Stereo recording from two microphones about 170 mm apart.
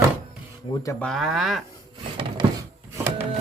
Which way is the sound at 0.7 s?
20° left (ahead or behind).